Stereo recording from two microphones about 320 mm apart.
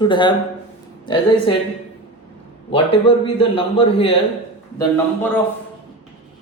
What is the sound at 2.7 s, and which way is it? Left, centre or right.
A man's voice, centre.